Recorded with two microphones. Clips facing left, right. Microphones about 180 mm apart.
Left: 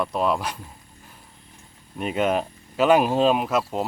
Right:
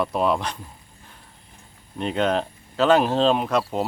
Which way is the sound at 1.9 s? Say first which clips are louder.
Even; 5° left (ahead or behind).